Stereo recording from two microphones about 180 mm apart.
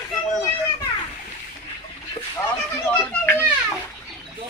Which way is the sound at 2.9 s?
10° left (ahead or behind).